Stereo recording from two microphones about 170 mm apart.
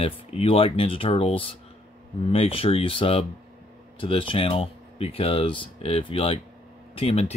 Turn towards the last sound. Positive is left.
turn(degrees=35)  # may be behind; listen again after turning